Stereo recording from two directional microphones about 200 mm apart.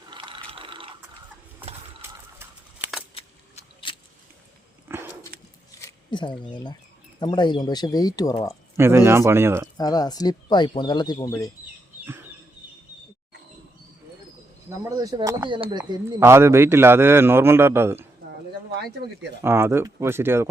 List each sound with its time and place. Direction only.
0.1 s ratchet: 25° right (ahead or behind)
2.0 s a sound: 10° right (ahead or behind)
3.2 s a sound: 30° left (ahead or behind)
4.9 s dog: 10° right (ahead or behind)
5.3 s a sound: 50° right (ahead or behind)
5.8 s a sound: 25° left (ahead or behind)
6.5 s speech: 20° left (ahead or behind)
8.7 s a man's voice: 10° right (ahead or behind)
9.7 s speech: 20° left (ahead or behind)
14.8 s speech: 20° right (ahead or behind)
15.8 s a man's voice: 15° right (ahead or behind)
19.0 s speech: 55° right (ahead or behind)
19.4 s a man's voice: 10° right (ahead or behind)